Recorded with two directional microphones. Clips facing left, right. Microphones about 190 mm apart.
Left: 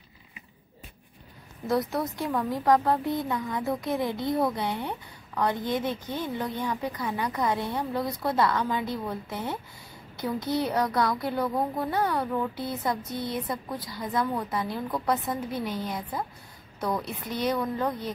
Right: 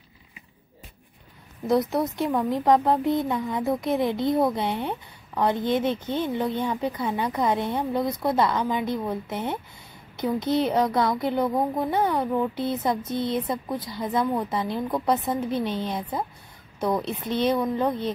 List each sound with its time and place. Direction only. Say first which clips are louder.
1.7 s a woman's voice: right 4 dB; 20° right (ahead or behind)